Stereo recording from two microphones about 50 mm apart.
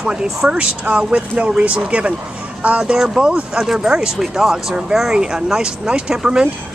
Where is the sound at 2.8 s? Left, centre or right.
Centre.